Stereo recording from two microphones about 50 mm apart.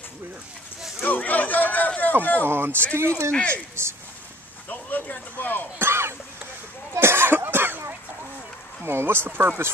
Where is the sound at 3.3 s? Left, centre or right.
Left.